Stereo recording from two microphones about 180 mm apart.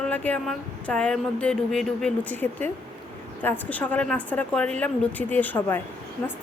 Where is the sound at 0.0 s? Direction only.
10° left (ahead or behind).